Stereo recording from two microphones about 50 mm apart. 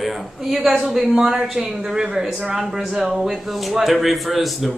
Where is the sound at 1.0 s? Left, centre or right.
Centre.